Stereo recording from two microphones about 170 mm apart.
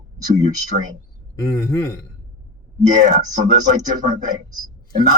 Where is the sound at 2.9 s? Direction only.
45° right (ahead or behind).